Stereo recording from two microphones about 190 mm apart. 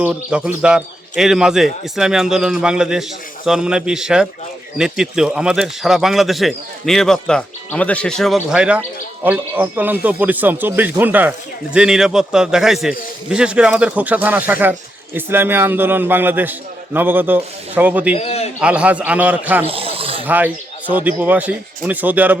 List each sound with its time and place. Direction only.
0.0 s a man's voice: 5° right (ahead or behind)
18.2 s a man's voice: 35° left (ahead or behind)
18.6 s speech: 5° right (ahead or behind)
19.6 s a sound: 30° right (ahead or behind)
20.2 s speech: 10° right (ahead or behind)